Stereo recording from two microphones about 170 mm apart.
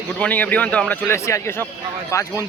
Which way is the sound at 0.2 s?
10° left (ahead or behind).